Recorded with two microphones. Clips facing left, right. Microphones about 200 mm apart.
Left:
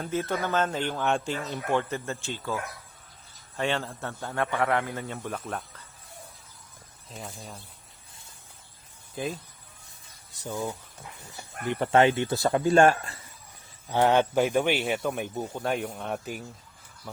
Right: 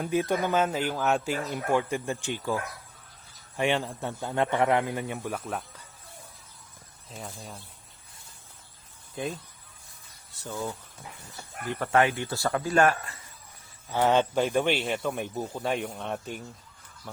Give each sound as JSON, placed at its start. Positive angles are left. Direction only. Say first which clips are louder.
{"t": 0.0, "sound": "speech", "louder": "right 3 dB", "side_deg": -15}
{"t": 3.6, "sound": "speech", "louder": "right 2 dB", "side_deg": -15}
{"t": 7.1, "sound": "speech", "louder": "even", "side_deg": 0}
{"t": 9.1, "sound": "speech", "louder": "left 1 dB", "side_deg": 0}
{"t": 10.3, "sound": "speech", "louder": "left 2 dB", "side_deg": 15}
{"t": 13.8, "sound": "speech", "louder": "left 1 dB", "side_deg": 15}